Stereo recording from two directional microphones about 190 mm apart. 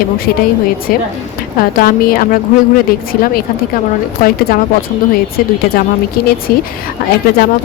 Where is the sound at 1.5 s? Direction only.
50° left (ahead or behind).